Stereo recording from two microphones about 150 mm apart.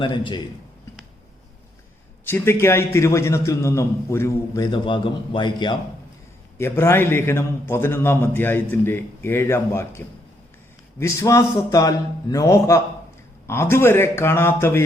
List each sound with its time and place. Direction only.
0.0 s a man's voice: 35° left (ahead or behind)
2.2 s a man's voice: 15° left (ahead or behind); by 5.7 s 30° left (ahead or behind)
6.6 s a man's voice: 15° left (ahead or behind)
11.0 s a man's voice: 20° left (ahead or behind)